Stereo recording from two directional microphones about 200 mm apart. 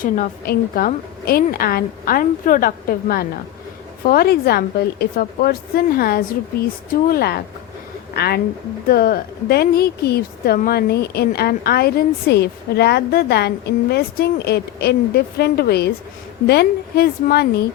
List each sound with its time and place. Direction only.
0.0 s a woman's voice: 45° left (ahead or behind)